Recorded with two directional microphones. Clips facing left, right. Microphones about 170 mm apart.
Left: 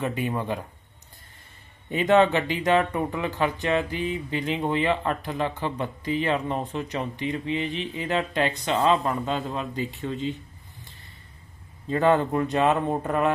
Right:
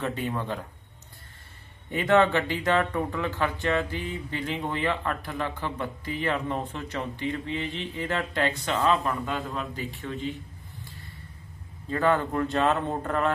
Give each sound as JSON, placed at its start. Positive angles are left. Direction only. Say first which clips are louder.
{"t": 0.0, "sound": "speech", "louder": "left 2 dB", "side_deg": 10}
{"t": 1.9, "sound": "speech", "louder": "left 2 dB", "side_deg": 20}
{"t": 11.9, "sound": "speech", "louder": "left 3 dB", "side_deg": 20}